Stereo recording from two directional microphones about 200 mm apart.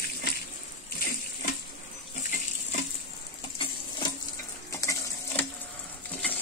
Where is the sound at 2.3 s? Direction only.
35° left (ahead or behind).